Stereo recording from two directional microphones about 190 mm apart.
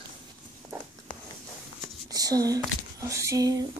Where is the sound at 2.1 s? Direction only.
20° right (ahead or behind).